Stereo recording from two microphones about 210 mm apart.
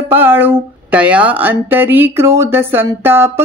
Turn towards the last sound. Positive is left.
turn(degrees=-10)  # may be behind; listen again after turning